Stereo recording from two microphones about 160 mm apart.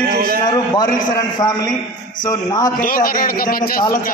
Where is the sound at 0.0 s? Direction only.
85° right.